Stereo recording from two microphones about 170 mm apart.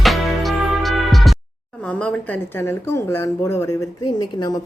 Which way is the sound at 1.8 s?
10° left (ahead or behind).